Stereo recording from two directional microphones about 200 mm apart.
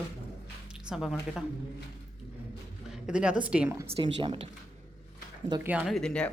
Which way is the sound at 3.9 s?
25° right (ahead or behind).